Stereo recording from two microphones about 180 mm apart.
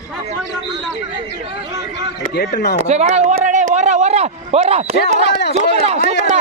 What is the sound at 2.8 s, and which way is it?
Speech, 40° right (ahead or behind).